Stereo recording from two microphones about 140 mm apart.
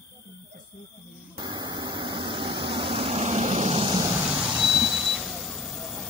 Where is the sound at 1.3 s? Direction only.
30° right (ahead or behind).